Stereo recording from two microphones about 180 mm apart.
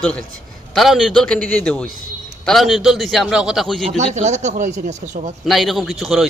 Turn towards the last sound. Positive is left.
turn(degrees=0)  # may be behind; listen again after turning